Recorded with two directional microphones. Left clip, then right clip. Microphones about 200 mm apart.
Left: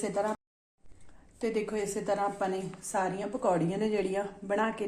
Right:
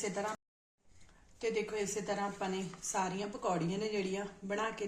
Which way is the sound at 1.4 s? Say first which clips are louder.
Left 4 dB; 30° left (ahead or behind).